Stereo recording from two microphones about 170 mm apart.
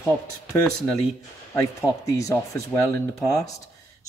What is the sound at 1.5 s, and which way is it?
Speech, 20° left (ahead or behind).